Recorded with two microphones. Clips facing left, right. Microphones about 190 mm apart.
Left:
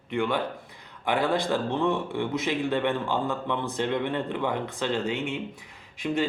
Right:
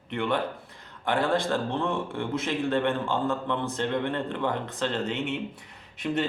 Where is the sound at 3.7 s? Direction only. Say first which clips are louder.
Left 3 dB; 15° left (ahead or behind).